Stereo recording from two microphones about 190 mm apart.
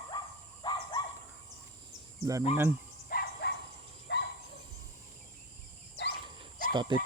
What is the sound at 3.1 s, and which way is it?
Dog, 55° left (ahead or behind).